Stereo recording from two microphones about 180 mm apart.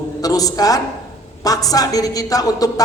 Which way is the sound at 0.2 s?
20° left (ahead or behind).